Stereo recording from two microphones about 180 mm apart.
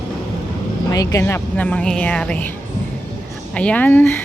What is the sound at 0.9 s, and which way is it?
Speech, 20° left (ahead or behind).